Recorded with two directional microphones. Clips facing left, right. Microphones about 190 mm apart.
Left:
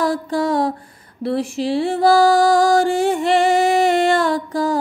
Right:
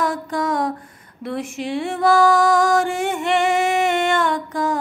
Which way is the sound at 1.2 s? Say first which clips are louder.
Left 6 dB; 35° left (ahead or behind).